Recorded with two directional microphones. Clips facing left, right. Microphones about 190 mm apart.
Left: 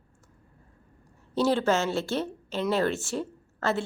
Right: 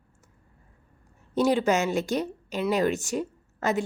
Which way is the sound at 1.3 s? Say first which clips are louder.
Right 1 dB; 15° right (ahead or behind).